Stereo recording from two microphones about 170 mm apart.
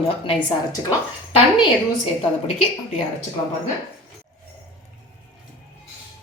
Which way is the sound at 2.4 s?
40° left (ahead or behind).